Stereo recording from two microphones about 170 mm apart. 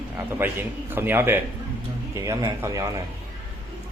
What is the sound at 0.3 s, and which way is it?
A man's voice, 10° right (ahead or behind).